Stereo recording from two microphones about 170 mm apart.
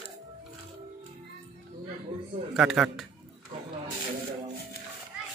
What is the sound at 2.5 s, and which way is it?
Speech, 5° right (ahead or behind).